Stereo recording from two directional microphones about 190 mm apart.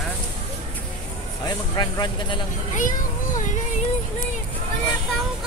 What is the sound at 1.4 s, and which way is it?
Speech, 20° left (ahead or behind).